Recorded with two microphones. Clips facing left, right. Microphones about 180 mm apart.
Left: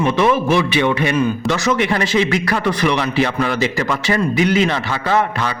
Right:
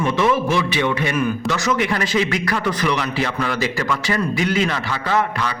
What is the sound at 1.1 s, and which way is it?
A man's voice, 25° left (ahead or behind).